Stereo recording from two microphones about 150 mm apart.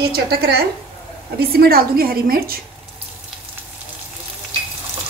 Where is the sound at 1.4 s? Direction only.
90° right.